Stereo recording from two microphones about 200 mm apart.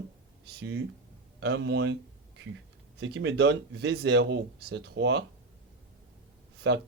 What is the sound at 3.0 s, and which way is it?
Speech, 60° right (ahead or behind).